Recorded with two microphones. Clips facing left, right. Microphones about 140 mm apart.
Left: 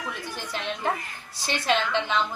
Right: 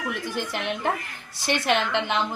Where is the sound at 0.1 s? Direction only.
60° right (ahead or behind).